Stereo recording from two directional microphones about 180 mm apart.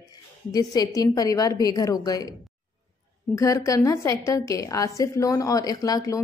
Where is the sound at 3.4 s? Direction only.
20° left (ahead or behind).